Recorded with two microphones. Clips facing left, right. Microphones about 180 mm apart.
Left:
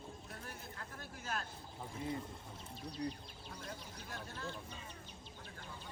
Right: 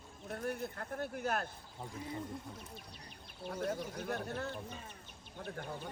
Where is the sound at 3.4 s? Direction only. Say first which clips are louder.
Right 13 dB; 60° right (ahead or behind).